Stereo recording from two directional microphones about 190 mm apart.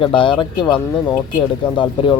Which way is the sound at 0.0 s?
25° left (ahead or behind).